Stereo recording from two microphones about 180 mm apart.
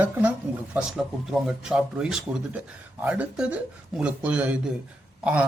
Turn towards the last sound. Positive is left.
turn(degrees=-5)  # may be behind; listen again after turning